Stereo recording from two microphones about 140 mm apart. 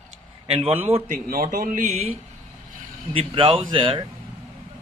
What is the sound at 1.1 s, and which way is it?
Speech, 85° right.